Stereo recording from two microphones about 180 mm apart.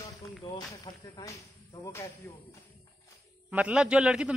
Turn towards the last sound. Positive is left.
turn(degrees=-5)  # may be behind; listen again after turning